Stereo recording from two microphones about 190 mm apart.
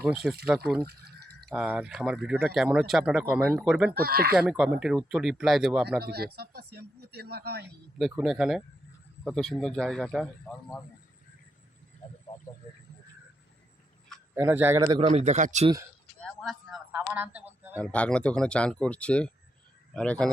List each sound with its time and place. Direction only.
0.0 s speech: centre (ahead or behind)
0.9 s drip: 55° right (ahead or behind)
1.5 s speech: 5° right (ahead or behind)
3.9 s speech: 55° right (ahead or behind)
4.4 s speech: centre (ahead or behind)
6.0 s speech: 55° right (ahead or behind)
8.2 s speech: centre (ahead or behind)
14.3 s speech: 10° right (ahead or behind)
14.8 s a man's voice: 25° right (ahead or behind)
15.0 s speech: 35° right (ahead or behind)
16.2 s a sound: centre (ahead or behind)
17.7 s a man's voice: 5° left (ahead or behind)